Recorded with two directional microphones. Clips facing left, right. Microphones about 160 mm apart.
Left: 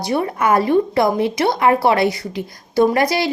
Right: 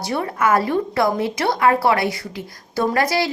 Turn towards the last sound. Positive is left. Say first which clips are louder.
# left 4 dB
turn(degrees=15)  # may be behind; listen again after turning